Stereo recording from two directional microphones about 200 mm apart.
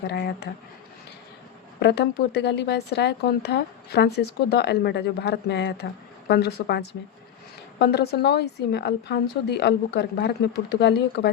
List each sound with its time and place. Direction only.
0.0 s a woman's voice: 55° left (ahead or behind)
1.8 s a woman's voice: 55° left (ahead or behind)